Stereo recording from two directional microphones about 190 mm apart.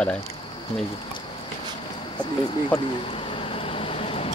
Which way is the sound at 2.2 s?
25° left (ahead or behind).